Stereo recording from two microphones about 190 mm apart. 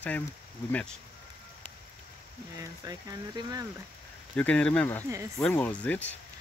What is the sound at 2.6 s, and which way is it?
Speech, 20° right (ahead or behind).